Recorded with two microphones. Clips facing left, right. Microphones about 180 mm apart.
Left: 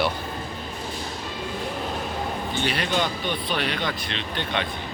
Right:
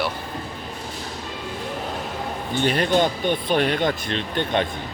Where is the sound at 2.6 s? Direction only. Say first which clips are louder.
Right 7 dB; 50° right (ahead or behind).